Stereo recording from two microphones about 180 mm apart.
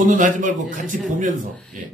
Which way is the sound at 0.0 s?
45° right (ahead or behind).